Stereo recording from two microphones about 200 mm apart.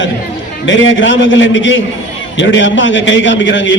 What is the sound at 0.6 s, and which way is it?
A man's voice, 70° left (ahead or behind).